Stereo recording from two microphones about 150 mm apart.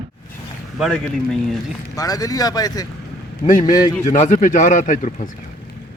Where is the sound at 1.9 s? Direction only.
25° left (ahead or behind).